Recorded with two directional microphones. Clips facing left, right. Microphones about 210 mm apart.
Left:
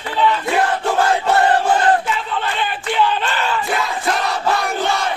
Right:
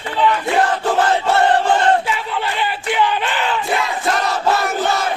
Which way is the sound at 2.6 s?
15° right (ahead or behind).